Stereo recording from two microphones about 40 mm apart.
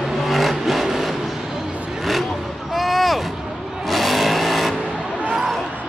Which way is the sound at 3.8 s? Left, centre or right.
Centre.